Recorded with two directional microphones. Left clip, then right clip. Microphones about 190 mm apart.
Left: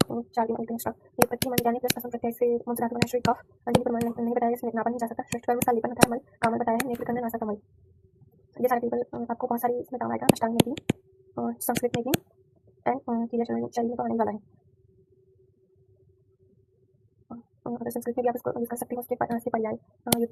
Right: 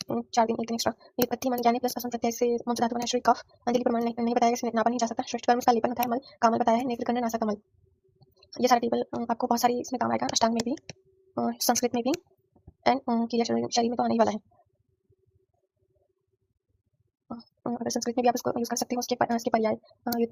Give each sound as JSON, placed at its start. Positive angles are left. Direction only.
{"t": 0.1, "sound": "speech", "side_deg": -25}
{"t": 5.2, "sound": "speech", "side_deg": -20}
{"t": 17.2, "sound": "speech", "side_deg": -30}